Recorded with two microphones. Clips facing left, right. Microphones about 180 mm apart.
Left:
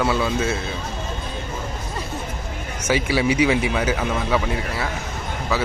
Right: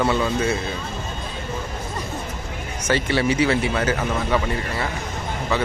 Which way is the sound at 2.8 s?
10° left (ahead or behind).